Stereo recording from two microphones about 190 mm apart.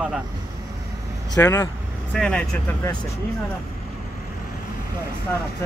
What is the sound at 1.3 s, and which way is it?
Speech, 15° left (ahead or behind).